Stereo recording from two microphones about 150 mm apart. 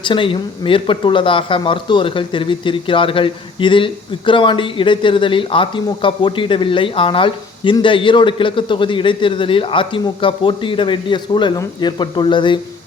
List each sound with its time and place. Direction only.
0.0 s speech: 35° left (ahead or behind)